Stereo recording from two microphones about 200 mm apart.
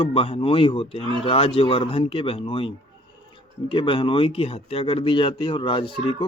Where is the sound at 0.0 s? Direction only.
25° left (ahead or behind).